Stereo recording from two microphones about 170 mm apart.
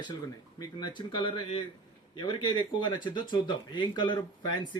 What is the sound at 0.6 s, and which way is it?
Speech, 25° left (ahead or behind).